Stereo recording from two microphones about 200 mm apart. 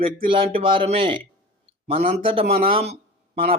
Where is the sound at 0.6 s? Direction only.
25° right (ahead or behind).